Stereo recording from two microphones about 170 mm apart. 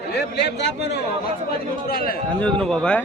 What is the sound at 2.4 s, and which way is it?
Speech, 5° left (ahead or behind).